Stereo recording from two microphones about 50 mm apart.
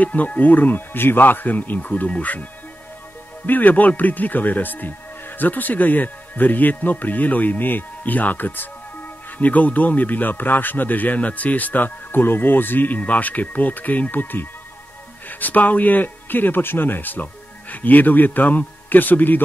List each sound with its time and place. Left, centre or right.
0.0 s a man's voice: left
3.4 s a man's voice: left